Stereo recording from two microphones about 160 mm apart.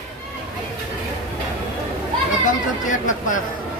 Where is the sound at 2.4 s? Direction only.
55° left (ahead or behind).